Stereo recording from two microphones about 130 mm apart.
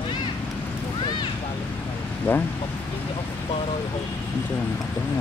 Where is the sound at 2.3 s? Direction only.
15° left (ahead or behind).